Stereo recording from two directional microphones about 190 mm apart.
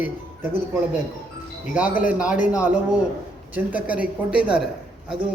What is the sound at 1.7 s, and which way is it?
A man's voice, 10° right (ahead or behind).